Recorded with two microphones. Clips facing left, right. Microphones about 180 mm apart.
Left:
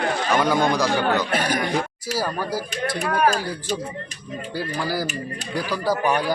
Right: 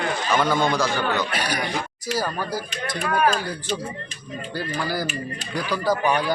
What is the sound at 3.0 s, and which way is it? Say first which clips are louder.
Speech: even; 40° left (ahead or behind).